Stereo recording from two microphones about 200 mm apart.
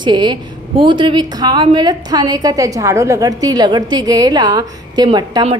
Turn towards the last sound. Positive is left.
turn(degrees=-25)  # may be behind; listen again after turning